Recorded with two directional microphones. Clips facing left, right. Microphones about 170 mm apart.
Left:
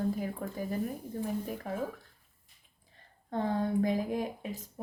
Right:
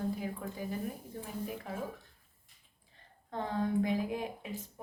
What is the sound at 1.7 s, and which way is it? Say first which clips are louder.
Speech: left 4 dB; 45° left (ahead or behind).